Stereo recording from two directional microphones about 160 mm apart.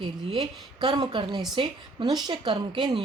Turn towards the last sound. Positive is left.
turn(degrees=-30)  # may be behind; listen again after turning